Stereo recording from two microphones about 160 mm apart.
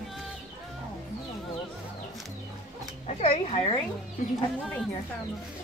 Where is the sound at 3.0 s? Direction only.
40° left (ahead or behind).